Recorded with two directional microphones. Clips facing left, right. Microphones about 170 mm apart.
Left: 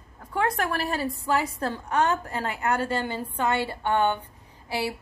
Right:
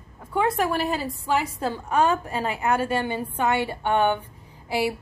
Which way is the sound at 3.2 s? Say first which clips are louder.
Right 2 dB; 10° right (ahead or behind).